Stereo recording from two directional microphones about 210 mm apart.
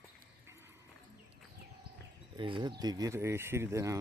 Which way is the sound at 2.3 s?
25° right (ahead or behind).